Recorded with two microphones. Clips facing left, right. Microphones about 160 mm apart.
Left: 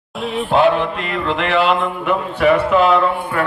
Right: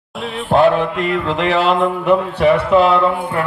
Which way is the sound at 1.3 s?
40° right (ahead or behind).